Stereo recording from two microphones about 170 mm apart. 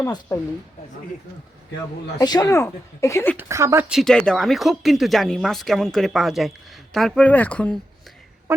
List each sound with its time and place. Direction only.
0.0 s speech: 15° left (ahead or behind)
2.1 s speech: 20° left (ahead or behind)
3.3 s speech: 15° right (ahead or behind)
3.8 s speech: centre (ahead or behind)
8.5 s speech: 15° right (ahead or behind)